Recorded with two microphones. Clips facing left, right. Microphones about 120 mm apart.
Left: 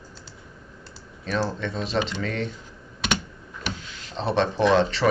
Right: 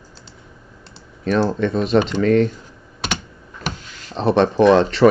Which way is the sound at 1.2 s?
55° right (ahead or behind).